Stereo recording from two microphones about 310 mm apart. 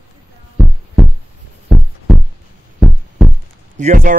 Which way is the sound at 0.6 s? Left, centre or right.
Centre.